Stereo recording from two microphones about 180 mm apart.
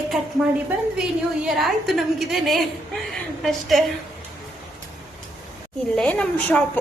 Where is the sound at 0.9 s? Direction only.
5° right (ahead or behind).